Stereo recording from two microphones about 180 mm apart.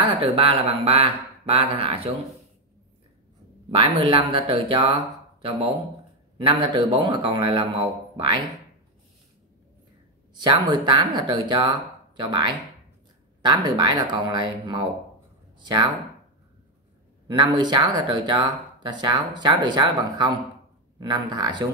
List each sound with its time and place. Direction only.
0.0 s speech: 30° right (ahead or behind)
3.7 s speech: 30° right (ahead or behind)
10.4 s speech: 25° right (ahead or behind)
17.3 s speech: 25° right (ahead or behind)